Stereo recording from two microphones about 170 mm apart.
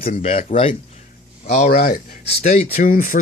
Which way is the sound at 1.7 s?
60° left (ahead or behind).